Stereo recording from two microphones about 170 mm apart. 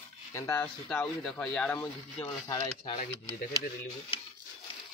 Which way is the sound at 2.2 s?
25° left (ahead or behind).